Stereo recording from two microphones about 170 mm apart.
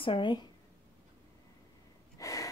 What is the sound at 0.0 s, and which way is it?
Speech, 30° left (ahead or behind).